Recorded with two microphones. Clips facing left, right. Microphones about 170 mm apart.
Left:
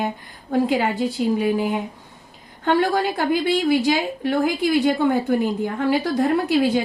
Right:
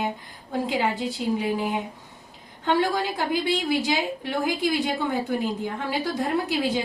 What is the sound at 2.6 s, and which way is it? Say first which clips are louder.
A woman's voice: left 4 dB; 60° left (ahead or behind).